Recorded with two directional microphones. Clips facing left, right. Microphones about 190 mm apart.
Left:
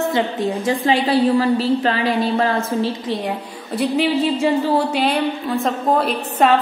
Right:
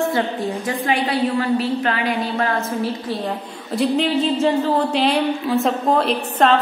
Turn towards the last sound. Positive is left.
turn(degrees=5)  # may be behind; listen again after turning